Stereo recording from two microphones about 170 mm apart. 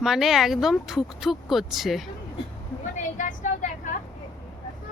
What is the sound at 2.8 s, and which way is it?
Vehicle, 45° left (ahead or behind).